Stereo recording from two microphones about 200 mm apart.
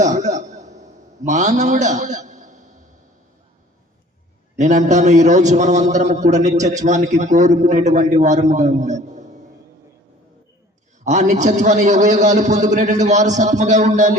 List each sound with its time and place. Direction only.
0.0 s a sound: 35° right (ahead or behind)
4.5 s a man's voice: 35° right (ahead or behind)
11.0 s a man's voice: 35° right (ahead or behind)